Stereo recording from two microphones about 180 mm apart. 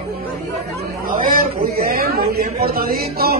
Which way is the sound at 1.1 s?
50° right (ahead or behind).